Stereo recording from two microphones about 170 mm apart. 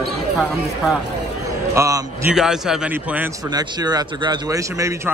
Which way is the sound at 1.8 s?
20° right (ahead or behind).